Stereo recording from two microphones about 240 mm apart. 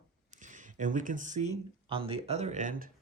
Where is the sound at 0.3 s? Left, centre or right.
Right.